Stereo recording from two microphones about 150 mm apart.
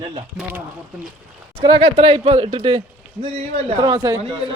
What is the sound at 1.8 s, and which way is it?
A man's voice, 40° right (ahead or behind).